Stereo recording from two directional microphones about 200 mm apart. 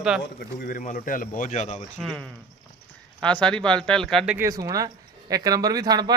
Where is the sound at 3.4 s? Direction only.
5° left (ahead or behind).